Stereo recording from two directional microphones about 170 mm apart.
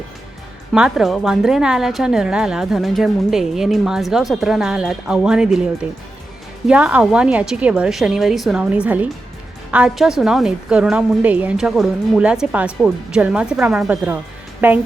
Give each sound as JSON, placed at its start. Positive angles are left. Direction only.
{"t": 0.7, "sound": "a woman's voice", "side_deg": 0}